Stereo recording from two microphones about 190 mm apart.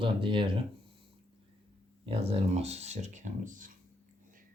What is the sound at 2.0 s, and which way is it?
Speech, 30° right (ahead or behind).